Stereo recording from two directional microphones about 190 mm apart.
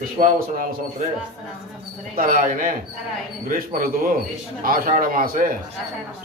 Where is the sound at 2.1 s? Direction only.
45° right (ahead or behind).